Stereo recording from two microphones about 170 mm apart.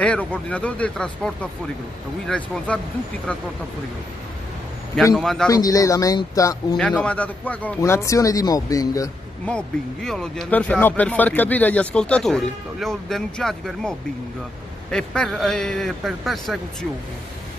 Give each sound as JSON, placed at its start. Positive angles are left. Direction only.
{"t": 0.0, "sound": "a man's voice", "side_deg": 5}
{"t": 5.1, "sound": "speech", "side_deg": 0}
{"t": 5.5, "sound": "speech", "side_deg": 20}
{"t": 6.8, "sound": "a man's voice", "side_deg": 5}
{"t": 9.5, "sound": "speech", "side_deg": 5}